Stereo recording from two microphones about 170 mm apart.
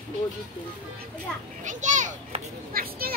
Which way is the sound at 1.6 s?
45° right (ahead or behind).